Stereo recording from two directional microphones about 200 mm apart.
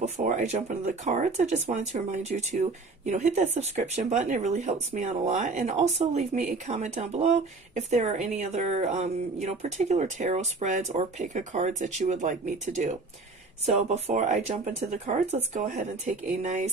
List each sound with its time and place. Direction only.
0.0 s speech: 35° right (ahead or behind)